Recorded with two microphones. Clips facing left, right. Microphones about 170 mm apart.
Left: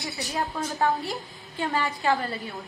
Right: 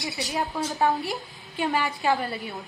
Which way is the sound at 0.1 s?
20° right (ahead or behind).